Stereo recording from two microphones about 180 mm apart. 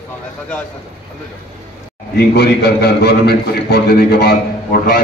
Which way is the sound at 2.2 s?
65° left (ahead or behind).